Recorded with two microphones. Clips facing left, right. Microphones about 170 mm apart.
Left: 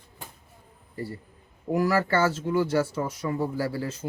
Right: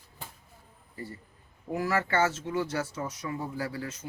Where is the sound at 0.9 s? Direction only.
35° left (ahead or behind).